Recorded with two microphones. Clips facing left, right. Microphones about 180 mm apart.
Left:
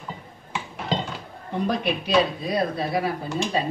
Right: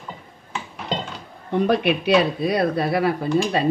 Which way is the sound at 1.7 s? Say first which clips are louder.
Right 5 dB; 70° right (ahead or behind).